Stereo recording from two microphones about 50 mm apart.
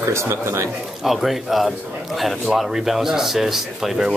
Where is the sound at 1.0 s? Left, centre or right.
Centre.